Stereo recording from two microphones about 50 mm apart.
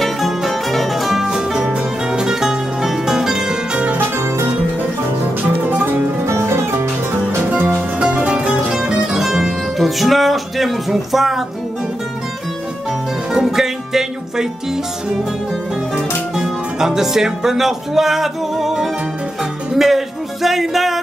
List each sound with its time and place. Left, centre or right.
0.0 s music: centre
1.3 s music: centre
5.4 s music: right
6.2 s music: right
7.5 s music: right
8.0 s music: right; by 11.4 s centre
13.3 s music: centre
16.3 s music: centre